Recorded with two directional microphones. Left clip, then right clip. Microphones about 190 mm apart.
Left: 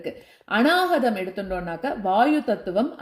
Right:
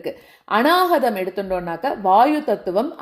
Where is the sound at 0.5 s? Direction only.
10° right (ahead or behind).